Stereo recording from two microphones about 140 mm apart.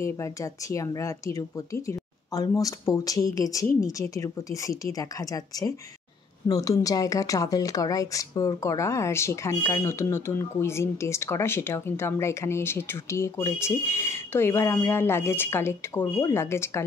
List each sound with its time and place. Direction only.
0.0 s speech: 20° left (ahead or behind)